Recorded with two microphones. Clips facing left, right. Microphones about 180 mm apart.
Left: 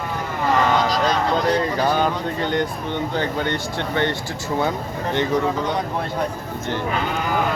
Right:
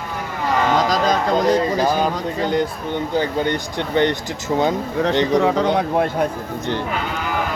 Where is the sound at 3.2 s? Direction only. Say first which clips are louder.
Right 6 dB; 15° right (ahead or behind).